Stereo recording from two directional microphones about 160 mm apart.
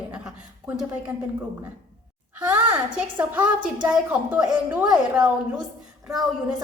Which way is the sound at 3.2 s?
10° right (ahead or behind).